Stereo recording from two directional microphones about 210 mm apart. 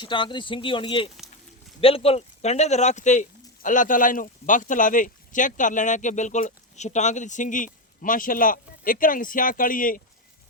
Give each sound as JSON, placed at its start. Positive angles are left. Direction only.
{"t": 0.0, "sound": "speech", "side_deg": 20}